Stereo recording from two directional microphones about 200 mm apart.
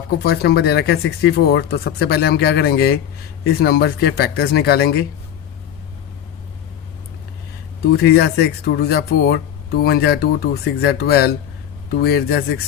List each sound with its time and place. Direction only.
0.2 s speech: 55° left (ahead or behind)
7.9 s speech: 55° left (ahead or behind)